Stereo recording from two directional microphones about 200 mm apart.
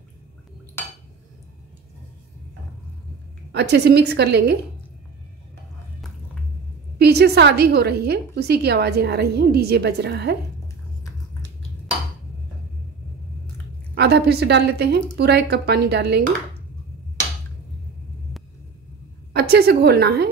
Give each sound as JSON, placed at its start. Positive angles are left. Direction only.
{"t": 3.5, "sound": "a woman's voice", "side_deg": -55}
{"t": 7.0, "sound": "a woman's voice", "side_deg": -55}
{"t": 13.9, "sound": "a woman's voice", "side_deg": -55}
{"t": 19.3, "sound": "a woman's voice", "side_deg": -55}